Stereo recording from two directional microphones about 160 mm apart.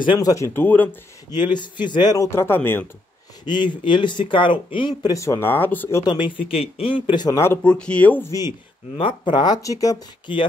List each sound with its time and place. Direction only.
0.0 s speech: 25° left (ahead or behind); by 0.8 s 10° left (ahead or behind)
1.3 s speech: 25° left (ahead or behind)
3.4 s speech: 30° left (ahead or behind)
6.5 s speech: 35° left (ahead or behind)
7.1 s speech: 25° left (ahead or behind)
7.6 s speech: 5° left (ahead or behind)
8.9 s speech: 30° left (ahead or behind)